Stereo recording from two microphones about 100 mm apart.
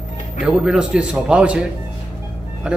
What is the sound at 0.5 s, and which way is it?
Speech, 10° right (ahead or behind).